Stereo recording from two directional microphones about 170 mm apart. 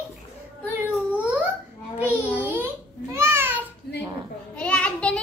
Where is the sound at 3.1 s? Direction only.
15° right (ahead or behind).